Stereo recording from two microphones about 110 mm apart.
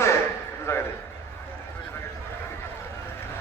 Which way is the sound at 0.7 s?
25° left (ahead or behind).